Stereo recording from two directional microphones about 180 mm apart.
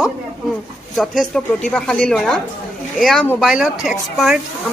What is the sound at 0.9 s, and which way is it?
Speech, centre (ahead or behind).